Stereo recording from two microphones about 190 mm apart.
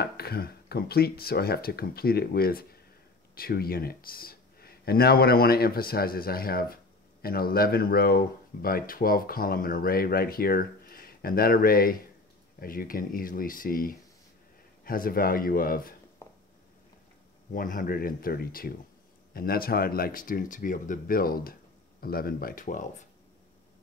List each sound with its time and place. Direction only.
0.0 s speech: 55° left (ahead or behind)
16.2 s a sound: 15° left (ahead or behind)
17.5 s speech: 45° left (ahead or behind)